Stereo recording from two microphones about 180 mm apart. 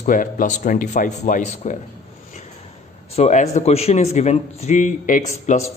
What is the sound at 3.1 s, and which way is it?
A man's voice, 40° left (ahead or behind).